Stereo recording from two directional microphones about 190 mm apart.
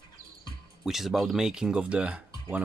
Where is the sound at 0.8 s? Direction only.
Centre (ahead or behind).